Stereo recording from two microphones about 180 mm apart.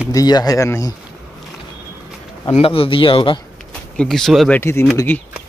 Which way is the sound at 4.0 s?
Centre (ahead or behind).